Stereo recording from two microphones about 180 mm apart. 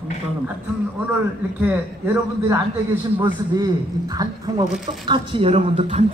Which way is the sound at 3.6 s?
20° right (ahead or behind).